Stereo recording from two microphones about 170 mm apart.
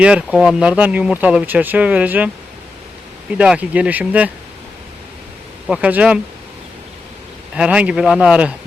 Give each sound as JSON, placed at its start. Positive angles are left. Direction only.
{"t": 0.0, "sound": "speech", "side_deg": -5}
{"t": 3.3, "sound": "speech", "side_deg": -5}
{"t": 5.6, "sound": "speech", "side_deg": -5}
{"t": 7.5, "sound": "speech", "side_deg": -5}